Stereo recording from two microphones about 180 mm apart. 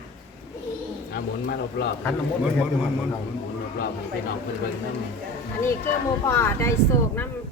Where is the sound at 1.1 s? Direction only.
65° left (ahead or behind).